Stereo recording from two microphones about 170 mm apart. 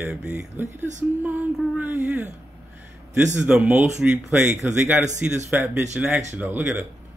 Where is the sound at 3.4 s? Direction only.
10° right (ahead or behind).